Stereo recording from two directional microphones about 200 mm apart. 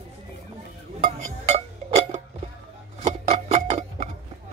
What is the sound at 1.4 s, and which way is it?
Music, 30° right (ahead or behind).